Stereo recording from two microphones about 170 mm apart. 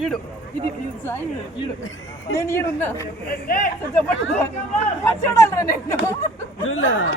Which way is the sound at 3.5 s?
50° left (ahead or behind).